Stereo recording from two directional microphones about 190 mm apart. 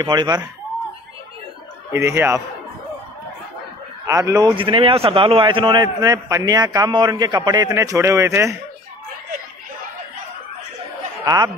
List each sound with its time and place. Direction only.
0.0 s a man's voice: 20° right (ahead or behind)
1.9 s a man's voice: 15° right (ahead or behind)
4.1 s a man's voice: 15° right (ahead or behind)
11.2 s a man's voice: 20° right (ahead or behind)